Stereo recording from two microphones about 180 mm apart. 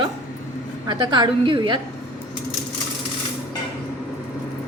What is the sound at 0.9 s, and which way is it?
Speech, 25° right (ahead or behind).